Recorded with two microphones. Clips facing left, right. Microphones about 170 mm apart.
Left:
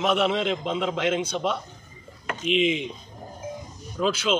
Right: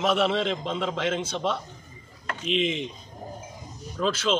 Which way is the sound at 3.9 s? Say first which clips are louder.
Left 1 dB; centre (ahead or behind).